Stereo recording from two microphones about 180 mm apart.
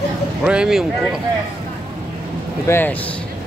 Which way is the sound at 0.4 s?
5° right (ahead or behind).